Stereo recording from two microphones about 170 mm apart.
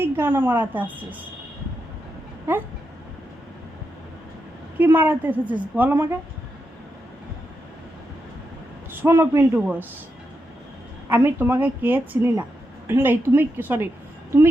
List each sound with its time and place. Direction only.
0.0 s a woman's voice: 15° right (ahead or behind)
4.8 s a woman's voice: 10° right (ahead or behind)
8.9 s a woman's voice: 15° right (ahead or behind)
11.1 s a woman's voice: 10° right (ahead or behind)